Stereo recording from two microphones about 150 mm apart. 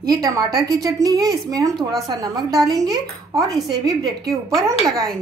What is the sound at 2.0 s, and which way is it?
A woman's voice, 25° right (ahead or behind).